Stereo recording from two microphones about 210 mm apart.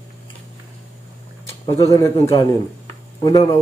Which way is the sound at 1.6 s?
15° left (ahead or behind).